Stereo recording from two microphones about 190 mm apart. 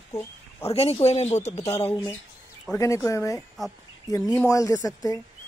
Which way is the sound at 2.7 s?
15° left (ahead or behind).